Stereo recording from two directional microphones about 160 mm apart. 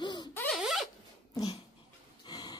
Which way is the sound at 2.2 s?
25° left (ahead or behind).